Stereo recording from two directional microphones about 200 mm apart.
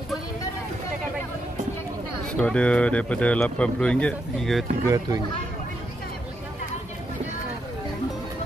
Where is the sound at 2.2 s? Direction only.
5° left (ahead or behind).